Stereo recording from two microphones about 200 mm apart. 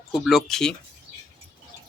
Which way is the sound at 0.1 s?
Centre (ahead or behind).